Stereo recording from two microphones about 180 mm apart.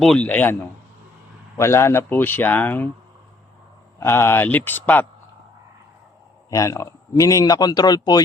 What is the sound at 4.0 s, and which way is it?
Speech, 15° left (ahead or behind).